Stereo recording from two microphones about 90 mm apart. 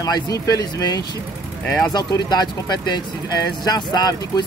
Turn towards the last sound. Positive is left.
turn(degrees=50)  # may be behind; listen again after turning